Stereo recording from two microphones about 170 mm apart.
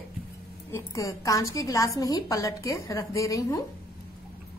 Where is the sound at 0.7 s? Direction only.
20° left (ahead or behind).